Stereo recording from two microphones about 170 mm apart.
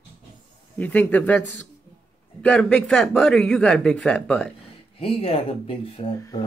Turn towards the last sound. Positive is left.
turn(degrees=30)  # may be behind; listen again after turning